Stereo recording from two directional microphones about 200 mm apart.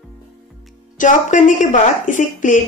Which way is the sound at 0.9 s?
40° left (ahead or behind).